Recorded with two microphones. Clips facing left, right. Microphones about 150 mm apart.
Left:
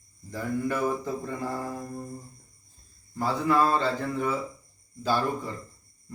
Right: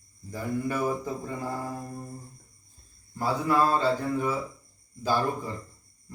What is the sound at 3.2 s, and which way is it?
Speech, 10° right (ahead or behind).